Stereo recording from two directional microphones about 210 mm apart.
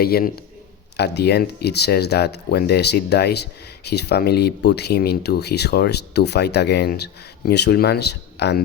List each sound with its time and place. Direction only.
0.0 s speech: 45° left (ahead or behind)